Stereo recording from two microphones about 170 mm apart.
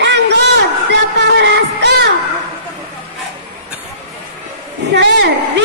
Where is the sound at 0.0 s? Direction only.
90° right.